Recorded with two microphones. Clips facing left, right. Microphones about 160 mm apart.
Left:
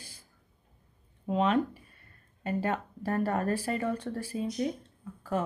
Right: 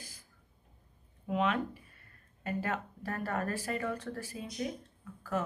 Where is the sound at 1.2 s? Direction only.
35° left (ahead or behind).